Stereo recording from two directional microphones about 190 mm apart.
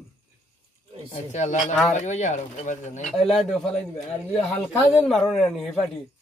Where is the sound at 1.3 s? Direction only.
40° left (ahead or behind).